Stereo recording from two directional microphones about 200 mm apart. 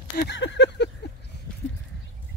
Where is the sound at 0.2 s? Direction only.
60° left (ahead or behind).